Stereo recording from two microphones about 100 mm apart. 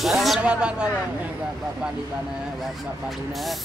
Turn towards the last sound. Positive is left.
turn(degrees=0)  # may be behind; listen again after turning